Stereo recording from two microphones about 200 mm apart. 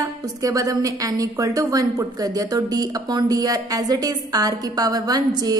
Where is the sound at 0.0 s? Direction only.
20° right (ahead or behind).